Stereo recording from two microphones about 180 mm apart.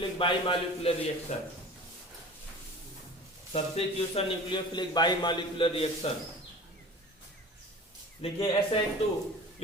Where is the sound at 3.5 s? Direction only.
35° left (ahead or behind).